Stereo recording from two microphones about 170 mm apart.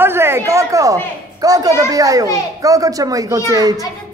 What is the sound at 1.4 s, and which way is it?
A child's voice, 20° right (ahead or behind).